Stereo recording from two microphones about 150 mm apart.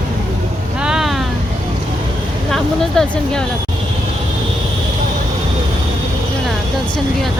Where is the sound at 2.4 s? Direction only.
Centre (ahead or behind).